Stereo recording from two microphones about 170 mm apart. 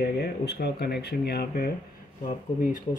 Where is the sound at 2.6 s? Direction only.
50° left (ahead or behind).